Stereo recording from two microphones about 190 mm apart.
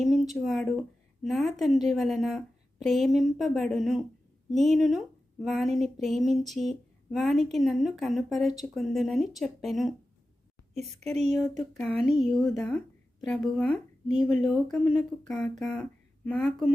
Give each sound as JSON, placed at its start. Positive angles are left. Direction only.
{"t": 0.0, "sound": "a woman's voice", "side_deg": 0}
{"t": 11.1, "sound": "speech", "side_deg": -35}
{"t": 11.8, "sound": "a woman's voice", "side_deg": 5}